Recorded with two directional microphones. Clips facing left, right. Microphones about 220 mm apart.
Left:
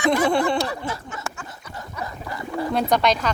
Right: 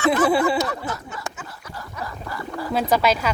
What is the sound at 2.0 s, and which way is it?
Gargling, 20° left (ahead or behind).